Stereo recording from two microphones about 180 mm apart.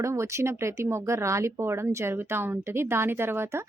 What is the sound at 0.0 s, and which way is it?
Speech, 15° right (ahead or behind).